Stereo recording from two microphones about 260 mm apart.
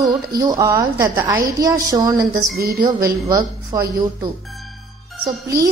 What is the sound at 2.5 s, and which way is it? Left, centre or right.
Speech, right.